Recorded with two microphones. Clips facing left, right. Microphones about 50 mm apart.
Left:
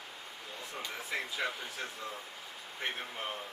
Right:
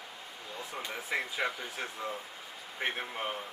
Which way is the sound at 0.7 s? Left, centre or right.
Centre.